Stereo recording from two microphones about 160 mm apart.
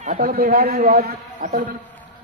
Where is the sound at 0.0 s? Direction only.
55° right (ahead or behind).